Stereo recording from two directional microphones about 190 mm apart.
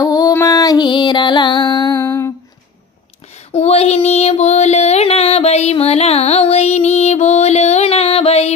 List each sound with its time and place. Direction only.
0.0 s music: 20° left (ahead or behind)
3.5 s music: 30° left (ahead or behind)